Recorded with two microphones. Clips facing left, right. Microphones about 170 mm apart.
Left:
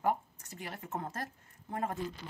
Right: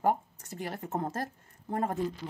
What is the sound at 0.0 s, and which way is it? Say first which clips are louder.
Speech: right 4 dB; 35° right (ahead or behind).